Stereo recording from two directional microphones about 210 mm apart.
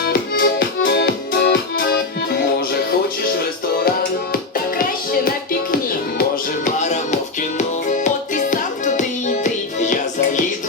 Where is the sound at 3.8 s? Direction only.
45° left (ahead or behind).